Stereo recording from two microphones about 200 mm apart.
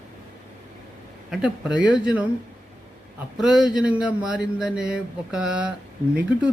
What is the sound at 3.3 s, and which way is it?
Speech, centre (ahead or behind).